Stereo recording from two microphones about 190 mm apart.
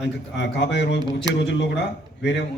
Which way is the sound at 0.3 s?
65° left (ahead or behind).